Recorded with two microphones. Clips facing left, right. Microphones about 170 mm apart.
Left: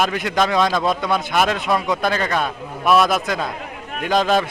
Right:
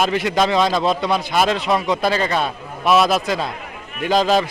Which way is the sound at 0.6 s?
25° right (ahead or behind).